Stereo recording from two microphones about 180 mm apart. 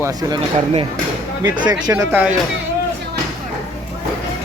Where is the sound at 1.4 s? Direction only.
20° right (ahead or behind).